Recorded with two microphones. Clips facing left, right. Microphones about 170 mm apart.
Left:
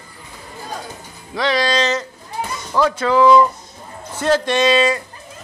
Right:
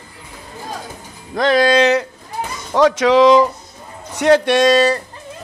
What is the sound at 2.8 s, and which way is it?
Speech, 90° right.